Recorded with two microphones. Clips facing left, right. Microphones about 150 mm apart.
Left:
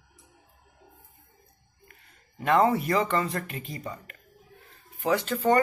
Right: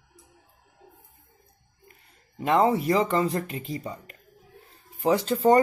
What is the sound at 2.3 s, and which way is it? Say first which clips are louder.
Speech: right 1 dB; 25° right (ahead or behind).